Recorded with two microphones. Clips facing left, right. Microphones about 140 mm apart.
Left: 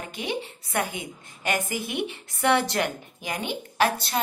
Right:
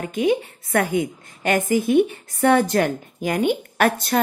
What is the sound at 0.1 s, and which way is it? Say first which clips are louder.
A woman's voice: right 12 dB; 45° right (ahead or behind).